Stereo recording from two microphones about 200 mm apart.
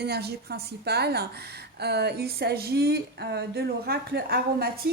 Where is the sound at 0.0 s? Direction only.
55° right (ahead or behind).